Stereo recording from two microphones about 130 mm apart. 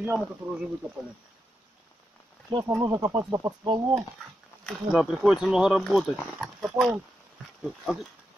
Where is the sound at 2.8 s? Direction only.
25° right (ahead or behind).